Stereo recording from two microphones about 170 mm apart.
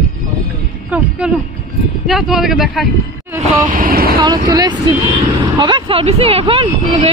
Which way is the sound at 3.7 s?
60° right (ahead or behind).